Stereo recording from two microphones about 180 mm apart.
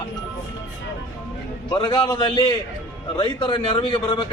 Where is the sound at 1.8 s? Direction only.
30° left (ahead or behind).